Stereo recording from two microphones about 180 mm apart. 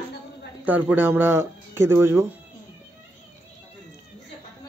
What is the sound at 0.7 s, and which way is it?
Speech, 10° right (ahead or behind).